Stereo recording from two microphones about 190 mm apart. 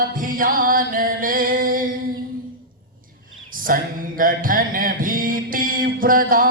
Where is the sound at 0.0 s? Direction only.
45° right (ahead or behind).